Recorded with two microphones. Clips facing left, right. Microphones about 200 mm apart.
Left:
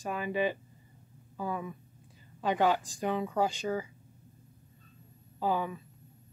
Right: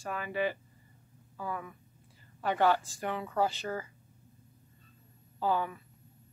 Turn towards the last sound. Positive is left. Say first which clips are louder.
# even
turn(degrees=15)  # may be behind; listen again after turning